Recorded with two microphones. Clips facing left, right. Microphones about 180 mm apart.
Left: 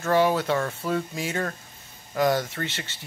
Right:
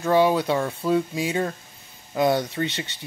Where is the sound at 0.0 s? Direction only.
15° right (ahead or behind).